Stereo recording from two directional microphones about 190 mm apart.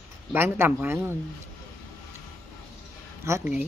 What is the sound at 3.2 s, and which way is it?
Speech, 10° right (ahead or behind).